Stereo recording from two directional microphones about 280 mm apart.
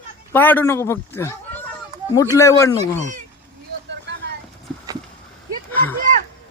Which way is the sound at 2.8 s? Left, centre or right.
Right.